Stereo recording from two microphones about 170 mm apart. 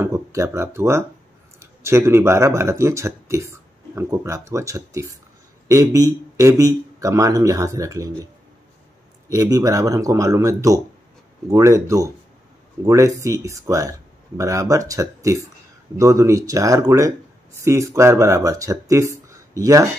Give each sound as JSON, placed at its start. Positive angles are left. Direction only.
{"t": 0.0, "sound": "speech", "side_deg": -15}
{"t": 9.3, "sound": "speech", "side_deg": -20}